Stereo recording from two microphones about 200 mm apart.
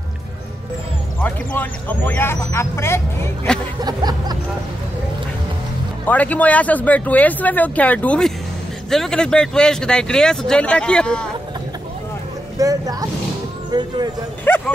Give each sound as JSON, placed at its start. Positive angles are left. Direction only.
{"t": 1.2, "sound": "speech", "side_deg": 10}
{"t": 3.8, "sound": "music", "side_deg": -20}
{"t": 6.0, "sound": "speech", "side_deg": 10}
{"t": 12.5, "sound": "speech", "side_deg": -15}
{"t": 14.5, "sound": "dog", "side_deg": 10}